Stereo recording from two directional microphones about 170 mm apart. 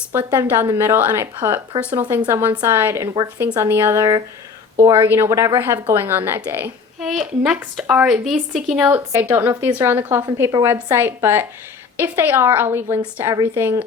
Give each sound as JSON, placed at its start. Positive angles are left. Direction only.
{"t": 0.1, "sound": "a woman's voice", "side_deg": -15}